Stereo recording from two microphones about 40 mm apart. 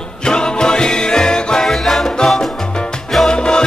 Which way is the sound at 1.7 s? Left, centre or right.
Centre.